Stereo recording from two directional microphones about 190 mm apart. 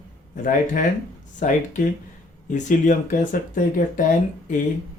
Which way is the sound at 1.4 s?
40° left (ahead or behind).